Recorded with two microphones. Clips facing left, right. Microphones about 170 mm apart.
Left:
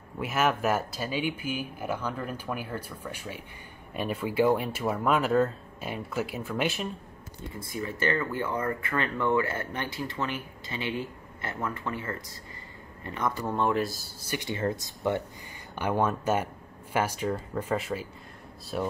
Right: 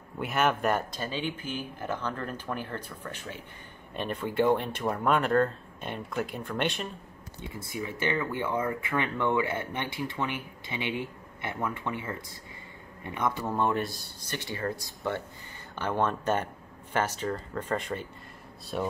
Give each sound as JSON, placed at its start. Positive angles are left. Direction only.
{"t": 0.2, "sound": "speech", "side_deg": 0}
{"t": 7.5, "sound": "speech", "side_deg": -10}
{"t": 13.5, "sound": "speech", "side_deg": 0}
{"t": 14.5, "sound": "speech", "side_deg": 20}